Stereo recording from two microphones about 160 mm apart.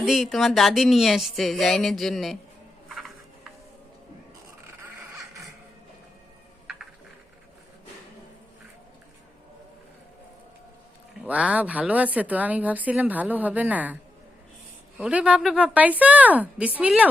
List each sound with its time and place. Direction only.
0.0 s speech: centre (ahead or behind)
4.8 s vehicle: 20° right (ahead or behind)
11.2 s a woman's voice: 10° right (ahead or behind)